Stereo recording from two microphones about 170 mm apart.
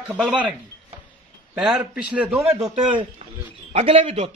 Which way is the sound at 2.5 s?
25° right (ahead or behind).